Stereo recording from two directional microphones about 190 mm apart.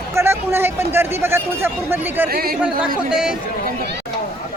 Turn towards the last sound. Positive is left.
turn(degrees=-5)  # may be behind; listen again after turning